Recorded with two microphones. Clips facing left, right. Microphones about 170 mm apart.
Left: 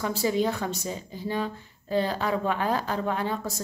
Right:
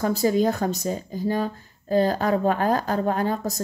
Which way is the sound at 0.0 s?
45° right (ahead or behind).